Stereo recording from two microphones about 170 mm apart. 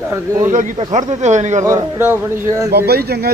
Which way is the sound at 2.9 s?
70° right (ahead or behind).